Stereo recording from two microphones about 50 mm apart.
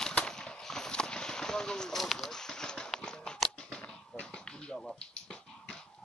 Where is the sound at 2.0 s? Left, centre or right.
Centre.